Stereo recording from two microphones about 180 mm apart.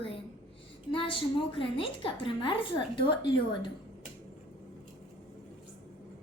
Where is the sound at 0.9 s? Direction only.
30° left (ahead or behind).